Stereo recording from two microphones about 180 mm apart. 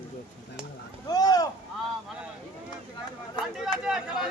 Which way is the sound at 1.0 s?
20° left (ahead or behind).